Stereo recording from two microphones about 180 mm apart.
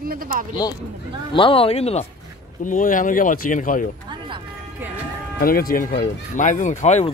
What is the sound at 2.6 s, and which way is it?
Speech, 45° left (ahead or behind).